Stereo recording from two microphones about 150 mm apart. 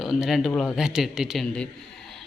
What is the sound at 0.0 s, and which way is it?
Speech, centre (ahead or behind).